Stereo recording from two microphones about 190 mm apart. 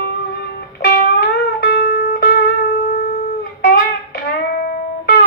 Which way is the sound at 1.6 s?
55° left (ahead or behind).